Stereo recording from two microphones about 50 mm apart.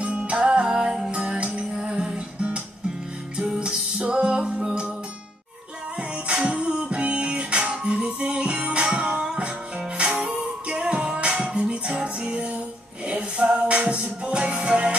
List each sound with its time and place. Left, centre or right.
0.0 s music: right
5.9 s music: right